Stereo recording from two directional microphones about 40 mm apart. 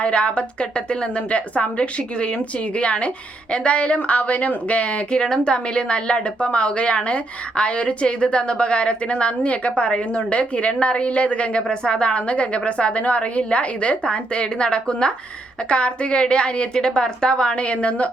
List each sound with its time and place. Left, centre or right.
0.0 s a woman's voice: left
5.2 s a woman's voice: left